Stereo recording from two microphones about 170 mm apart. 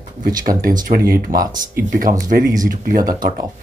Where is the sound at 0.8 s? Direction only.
60° right (ahead or behind).